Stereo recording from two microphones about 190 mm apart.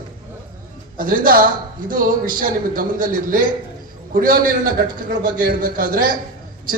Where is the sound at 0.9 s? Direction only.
45° right (ahead or behind).